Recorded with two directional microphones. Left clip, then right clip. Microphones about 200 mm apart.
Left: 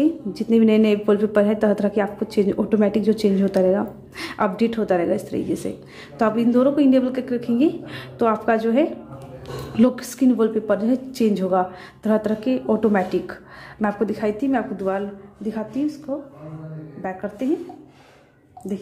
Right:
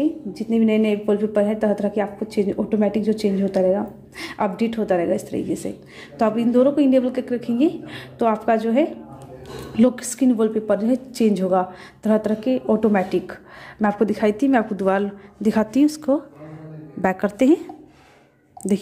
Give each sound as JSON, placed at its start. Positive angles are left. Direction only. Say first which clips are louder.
{"t": 0.0, "sound": "a woman's voice", "louder": "left 2 dB", "side_deg": 5}